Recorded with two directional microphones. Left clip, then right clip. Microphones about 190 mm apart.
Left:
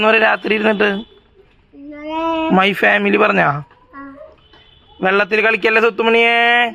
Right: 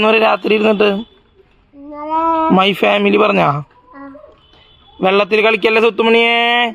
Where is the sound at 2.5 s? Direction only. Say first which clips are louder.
Left 3 dB; 30° right (ahead or behind).